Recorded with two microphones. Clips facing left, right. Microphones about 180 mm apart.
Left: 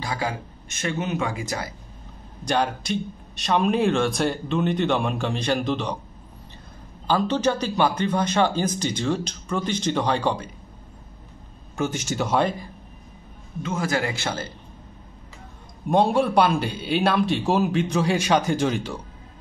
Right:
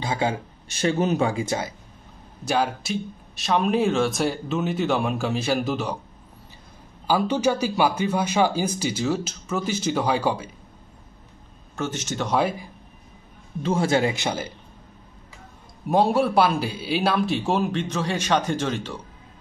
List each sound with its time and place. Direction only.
0.0 s speech: 25° right (ahead or behind)
2.4 s a man's voice: 5° right (ahead or behind)
7.1 s speech: 10° right (ahead or behind)
11.7 s speech: 10° left (ahead or behind)
12.4 s speech: 10° right (ahead or behind)
13.6 s speech: 30° right (ahead or behind); by 14.5 s 15° right (ahead or behind)
15.9 s a man's voice: 5° right (ahead or behind)